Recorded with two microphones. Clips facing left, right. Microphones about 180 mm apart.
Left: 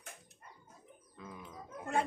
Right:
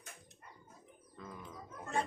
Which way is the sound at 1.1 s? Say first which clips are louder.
Even; 10° left (ahead or behind).